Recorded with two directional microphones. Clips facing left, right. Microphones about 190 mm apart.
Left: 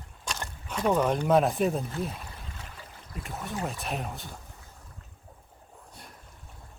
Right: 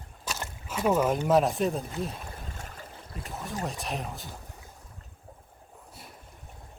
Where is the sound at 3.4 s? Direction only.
Centre (ahead or behind).